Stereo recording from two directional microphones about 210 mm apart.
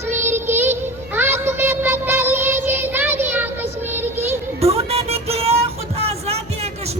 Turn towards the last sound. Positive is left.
turn(degrees=-30)  # may be behind; listen again after turning